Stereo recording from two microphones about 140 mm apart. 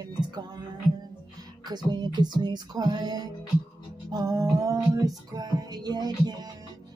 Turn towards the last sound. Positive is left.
turn(degrees=-30)  # may be behind; listen again after turning